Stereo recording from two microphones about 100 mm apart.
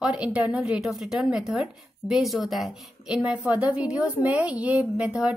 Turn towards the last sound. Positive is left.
turn(degrees=-10)  # may be behind; listen again after turning